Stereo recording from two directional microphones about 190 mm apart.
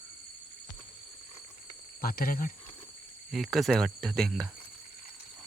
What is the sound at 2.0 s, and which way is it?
Speech, 50° left (ahead or behind).